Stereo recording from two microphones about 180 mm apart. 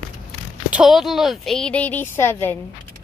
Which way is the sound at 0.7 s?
Centre (ahead or behind).